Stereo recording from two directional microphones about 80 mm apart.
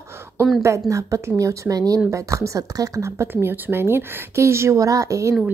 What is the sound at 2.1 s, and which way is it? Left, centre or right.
Speech, right.